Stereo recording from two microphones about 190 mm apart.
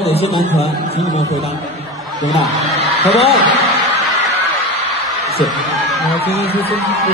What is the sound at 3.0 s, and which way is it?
Speech, 30° left (ahead or behind).